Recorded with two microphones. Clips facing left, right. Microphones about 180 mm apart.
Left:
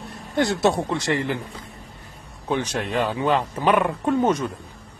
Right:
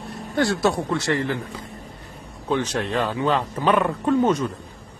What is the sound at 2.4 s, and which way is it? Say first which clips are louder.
Speech: right 1 dB; 15° left (ahead or behind).